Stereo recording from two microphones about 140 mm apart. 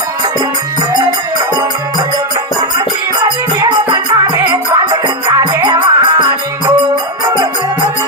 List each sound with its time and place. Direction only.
3.2 s music: 30° right (ahead or behind)